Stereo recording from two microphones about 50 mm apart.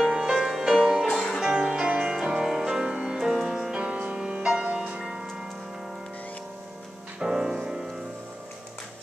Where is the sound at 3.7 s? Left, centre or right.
Right.